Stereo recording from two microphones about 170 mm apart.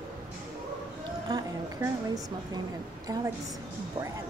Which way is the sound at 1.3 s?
20° right (ahead or behind).